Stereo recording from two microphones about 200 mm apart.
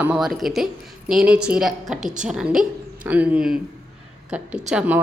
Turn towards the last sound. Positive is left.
turn(degrees=-5)  # may be behind; listen again after turning